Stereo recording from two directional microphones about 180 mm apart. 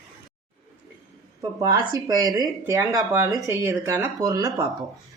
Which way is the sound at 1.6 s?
20° right (ahead or behind).